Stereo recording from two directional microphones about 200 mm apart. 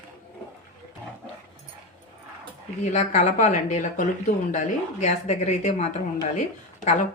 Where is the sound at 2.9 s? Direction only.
35° left (ahead or behind).